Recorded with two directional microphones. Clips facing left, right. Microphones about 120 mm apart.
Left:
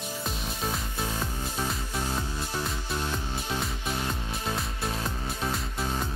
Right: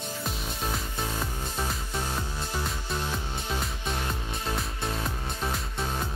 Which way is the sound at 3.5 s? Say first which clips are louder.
Left 1 dB; centre (ahead or behind).